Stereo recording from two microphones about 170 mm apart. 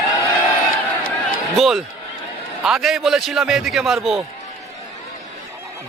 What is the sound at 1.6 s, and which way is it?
Speech, centre (ahead or behind).